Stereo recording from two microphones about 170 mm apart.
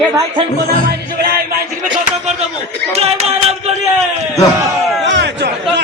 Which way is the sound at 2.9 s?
40° right (ahead or behind).